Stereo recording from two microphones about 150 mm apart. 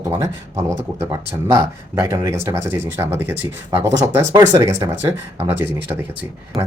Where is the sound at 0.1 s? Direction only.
20° right (ahead or behind).